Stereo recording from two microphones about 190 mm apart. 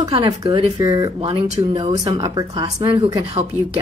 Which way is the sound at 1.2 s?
30° right (ahead or behind).